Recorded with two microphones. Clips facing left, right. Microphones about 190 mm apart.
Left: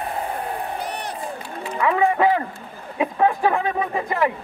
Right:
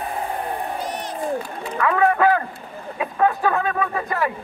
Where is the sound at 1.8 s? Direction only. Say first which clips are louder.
Even; 20° left (ahead or behind).